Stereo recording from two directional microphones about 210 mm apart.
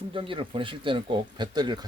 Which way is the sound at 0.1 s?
25° right (ahead or behind).